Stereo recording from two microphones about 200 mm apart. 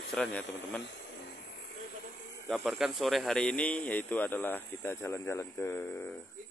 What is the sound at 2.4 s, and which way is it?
Speech, centre (ahead or behind).